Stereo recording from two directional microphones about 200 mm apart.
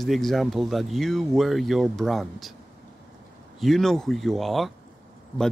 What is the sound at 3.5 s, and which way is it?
Speech, centre (ahead or behind).